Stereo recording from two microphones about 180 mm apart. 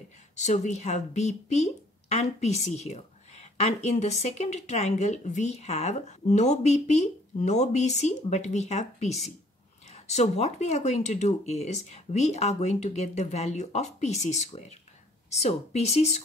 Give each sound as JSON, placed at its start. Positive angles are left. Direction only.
{"t": 0.4, "sound": "speech", "side_deg": 40}